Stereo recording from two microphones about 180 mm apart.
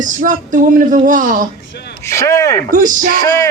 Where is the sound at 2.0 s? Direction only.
15° left (ahead or behind).